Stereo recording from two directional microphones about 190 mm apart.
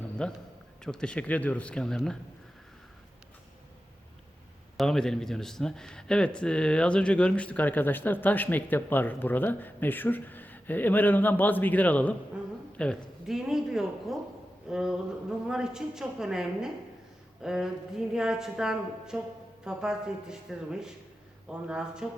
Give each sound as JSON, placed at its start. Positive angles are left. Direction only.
{"t": 0.2, "sound": "a woman's voice", "side_deg": 5}
{"t": 4.8, "sound": "a man's voice", "side_deg": 0}